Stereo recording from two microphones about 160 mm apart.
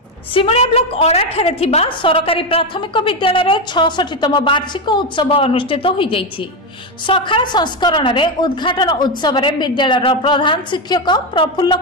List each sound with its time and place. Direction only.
0.3 s a woman's voice: 35° left (ahead or behind)